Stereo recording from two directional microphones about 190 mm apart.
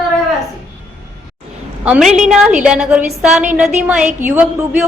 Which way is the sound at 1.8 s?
5° right (ahead or behind).